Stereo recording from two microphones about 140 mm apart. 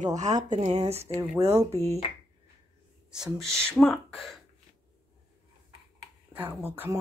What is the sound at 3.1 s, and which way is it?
Speech, centre (ahead or behind).